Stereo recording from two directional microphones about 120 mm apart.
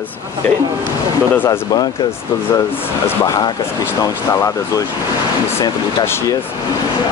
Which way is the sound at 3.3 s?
35° left (ahead or behind).